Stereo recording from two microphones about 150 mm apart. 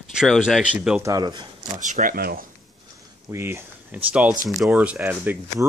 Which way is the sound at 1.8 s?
60° right (ahead or behind).